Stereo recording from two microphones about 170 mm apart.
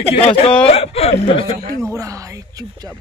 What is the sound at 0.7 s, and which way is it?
Speech, 35° left (ahead or behind).